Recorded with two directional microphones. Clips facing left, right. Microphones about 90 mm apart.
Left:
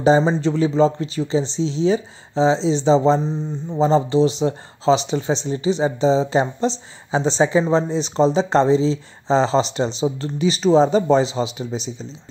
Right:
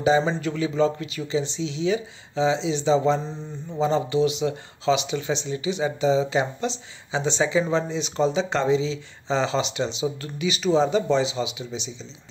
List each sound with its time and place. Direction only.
0.2 s speech: 25° left (ahead or behind); by 12.1 s 40° left (ahead or behind)